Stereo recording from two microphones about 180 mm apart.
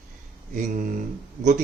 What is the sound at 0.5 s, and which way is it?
Speech, 50° right (ahead or behind).